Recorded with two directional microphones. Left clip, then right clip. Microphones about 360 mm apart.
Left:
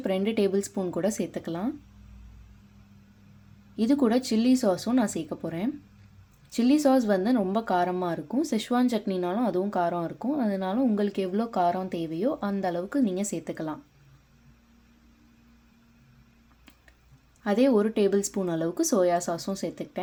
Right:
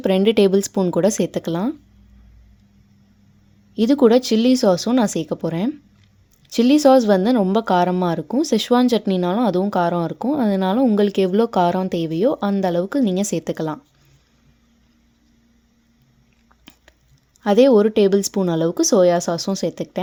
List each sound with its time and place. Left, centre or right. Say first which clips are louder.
0.0 s speech: right 11 dB; right
3.8 s speech: right 10 dB; right
16.7 s a sound: right 10 dB; right
17.4 s speech: right 10 dB; right